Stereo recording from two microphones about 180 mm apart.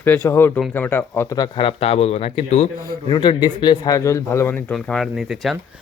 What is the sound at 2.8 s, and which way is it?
A man's voice, 20° left (ahead or behind).